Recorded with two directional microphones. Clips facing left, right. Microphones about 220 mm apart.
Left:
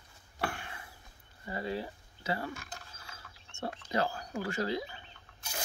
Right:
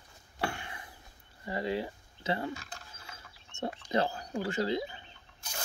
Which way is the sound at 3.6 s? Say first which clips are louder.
Right 2 dB; 25° right (ahead or behind).